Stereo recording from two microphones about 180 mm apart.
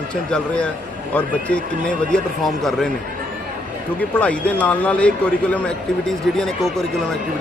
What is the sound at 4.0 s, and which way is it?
Speech, 5° left (ahead or behind).